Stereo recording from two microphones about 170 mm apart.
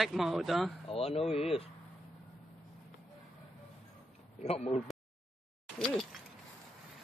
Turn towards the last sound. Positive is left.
turn(degrees=0)  # may be behind; listen again after turning